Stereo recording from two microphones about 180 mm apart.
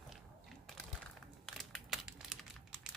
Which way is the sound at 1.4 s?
Centre (ahead or behind).